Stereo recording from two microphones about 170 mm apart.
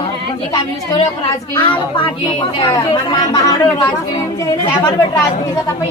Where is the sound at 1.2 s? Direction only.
30° left (ahead or behind).